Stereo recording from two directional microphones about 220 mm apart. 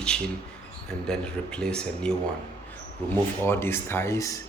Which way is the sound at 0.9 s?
5° left (ahead or behind).